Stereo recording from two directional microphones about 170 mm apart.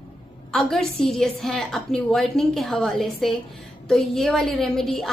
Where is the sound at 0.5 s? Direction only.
Centre (ahead or behind).